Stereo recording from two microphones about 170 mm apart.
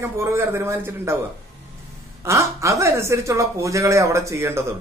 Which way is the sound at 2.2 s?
20° right (ahead or behind).